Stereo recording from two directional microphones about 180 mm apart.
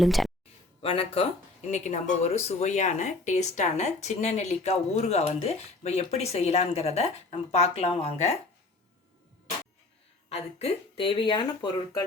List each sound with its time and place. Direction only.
0.0 s speech: centre (ahead or behind)
0.8 s speech: 30° left (ahead or behind)
10.2 s speech: 35° left (ahead or behind)